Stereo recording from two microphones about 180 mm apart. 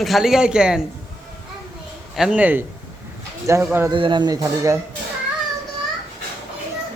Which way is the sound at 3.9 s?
25° right (ahead or behind).